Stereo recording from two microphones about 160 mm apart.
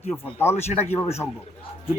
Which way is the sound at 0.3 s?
15° left (ahead or behind).